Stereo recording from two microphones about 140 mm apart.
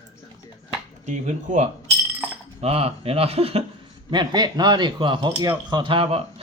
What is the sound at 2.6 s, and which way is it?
Speech, 45° right (ahead or behind).